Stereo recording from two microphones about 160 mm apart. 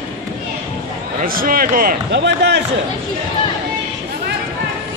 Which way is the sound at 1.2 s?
65° right (ahead or behind).